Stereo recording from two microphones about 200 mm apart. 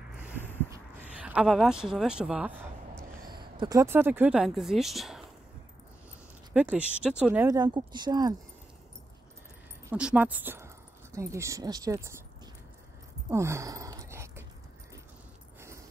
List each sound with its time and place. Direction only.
0.7 s speech: 10° right (ahead or behind)
3.3 s speech: 20° right (ahead or behind); by 5.2 s centre (ahead or behind)
6.5 s speech: 5° right (ahead or behind)
7.4 s speech: 20° right (ahead or behind)
9.8 s speech: 5° right (ahead or behind)
13.3 s a sound: 15° right (ahead or behind)